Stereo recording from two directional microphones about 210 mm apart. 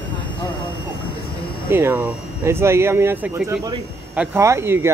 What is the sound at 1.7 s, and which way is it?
Speech, 10° right (ahead or behind).